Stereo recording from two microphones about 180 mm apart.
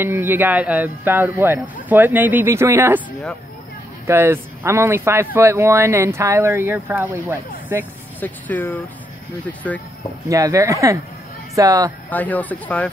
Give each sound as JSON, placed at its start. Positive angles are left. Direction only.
{"t": 0.0, "sound": "speech", "side_deg": -10}
{"t": 4.1, "sound": "speech", "side_deg": -15}
{"t": 8.2, "sound": "speech", "side_deg": 10}
{"t": 10.2, "sound": "speech", "side_deg": -15}
{"t": 12.1, "sound": "speech", "side_deg": 10}